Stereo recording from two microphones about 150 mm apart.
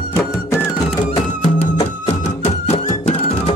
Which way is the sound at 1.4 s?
45° left (ahead or behind).